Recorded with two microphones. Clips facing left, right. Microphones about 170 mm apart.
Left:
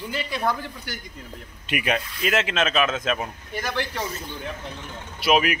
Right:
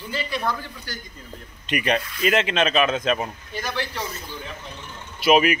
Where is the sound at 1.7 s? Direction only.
5° left (ahead or behind).